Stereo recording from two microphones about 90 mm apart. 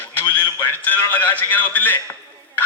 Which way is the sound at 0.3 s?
20° left (ahead or behind).